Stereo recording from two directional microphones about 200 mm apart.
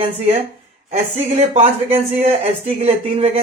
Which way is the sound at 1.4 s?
35° right (ahead or behind).